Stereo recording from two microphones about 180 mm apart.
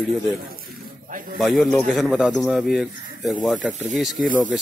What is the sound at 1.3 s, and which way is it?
A man's voice, centre (ahead or behind).